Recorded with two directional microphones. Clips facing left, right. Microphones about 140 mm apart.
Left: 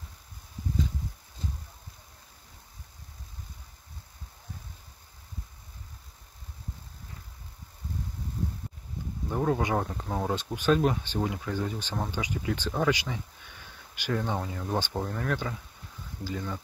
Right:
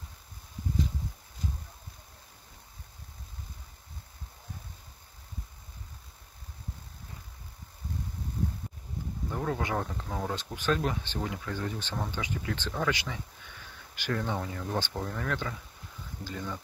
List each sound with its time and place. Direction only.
9.3 s speech: 15° left (ahead or behind)